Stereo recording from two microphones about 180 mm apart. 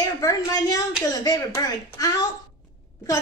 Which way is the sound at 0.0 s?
20° left (ahead or behind).